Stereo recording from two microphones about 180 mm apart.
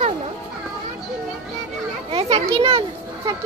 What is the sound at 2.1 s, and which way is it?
A child's voice, 30° right (ahead or behind).